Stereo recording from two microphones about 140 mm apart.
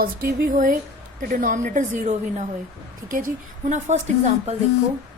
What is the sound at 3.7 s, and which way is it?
Speech, 60° right (ahead or behind).